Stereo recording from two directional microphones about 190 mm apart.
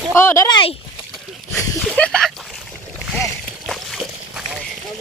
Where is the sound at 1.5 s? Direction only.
5° left (ahead or behind).